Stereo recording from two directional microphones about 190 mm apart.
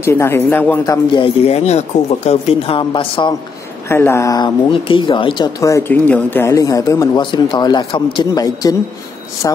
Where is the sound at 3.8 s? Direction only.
15° left (ahead or behind).